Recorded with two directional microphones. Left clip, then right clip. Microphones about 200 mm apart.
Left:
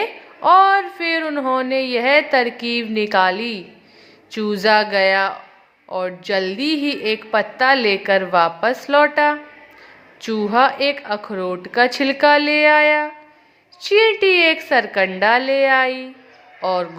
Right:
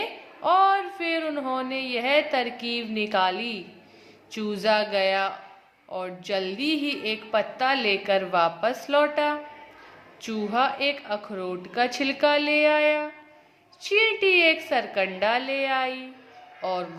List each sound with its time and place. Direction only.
0.0 s a woman's voice: 20° left (ahead or behind)